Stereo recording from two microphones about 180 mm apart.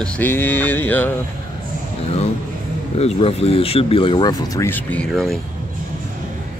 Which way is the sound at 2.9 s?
35° left (ahead or behind).